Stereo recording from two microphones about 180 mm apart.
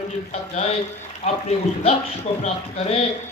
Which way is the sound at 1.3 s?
40° left (ahead or behind).